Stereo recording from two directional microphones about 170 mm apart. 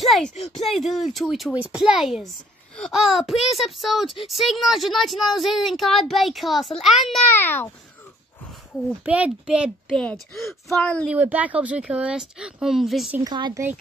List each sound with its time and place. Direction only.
0.0 s speech: centre (ahead or behind)
7.3 s a child's voice: 10° left (ahead or behind)
9.0 s speech: 5° right (ahead or behind)
9.8 s speech: 10° left (ahead or behind)
11.1 s speech: 10° right (ahead or behind)
13.2 s speech: 25° right (ahead or behind)